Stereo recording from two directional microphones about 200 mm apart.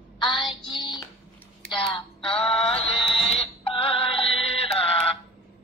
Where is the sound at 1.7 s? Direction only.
25° left (ahead or behind).